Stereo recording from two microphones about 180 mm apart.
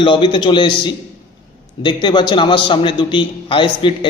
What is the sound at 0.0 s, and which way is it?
A man's voice, 25° left (ahead or behind).